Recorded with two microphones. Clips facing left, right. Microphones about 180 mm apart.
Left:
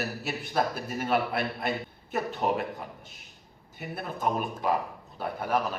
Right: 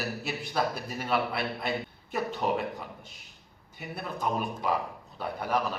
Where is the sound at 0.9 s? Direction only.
50° left (ahead or behind).